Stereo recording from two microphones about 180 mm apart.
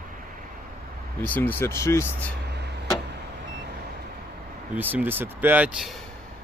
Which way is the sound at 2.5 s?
70° right (ahead or behind).